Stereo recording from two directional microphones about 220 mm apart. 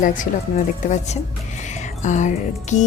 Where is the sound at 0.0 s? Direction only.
35° left (ahead or behind).